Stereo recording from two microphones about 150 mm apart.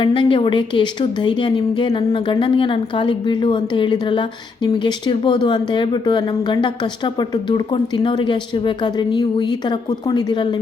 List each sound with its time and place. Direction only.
0.0 s a woman's voice: 35° left (ahead or behind)